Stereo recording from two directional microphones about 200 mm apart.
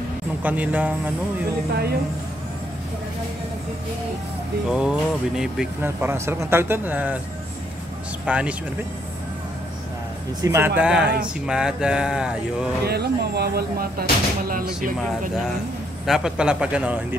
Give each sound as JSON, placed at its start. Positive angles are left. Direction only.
{"t": 0.4, "sound": "speech", "side_deg": -10}
{"t": 1.7, "sound": "speech", "side_deg": -50}
{"t": 4.6, "sound": "speech", "side_deg": -5}
{"t": 8.3, "sound": "speech", "side_deg": -5}
{"t": 10.4, "sound": "speech", "side_deg": -15}
{"t": 12.8, "sound": "speech", "side_deg": -55}
{"t": 16.1, "sound": "speech", "side_deg": -5}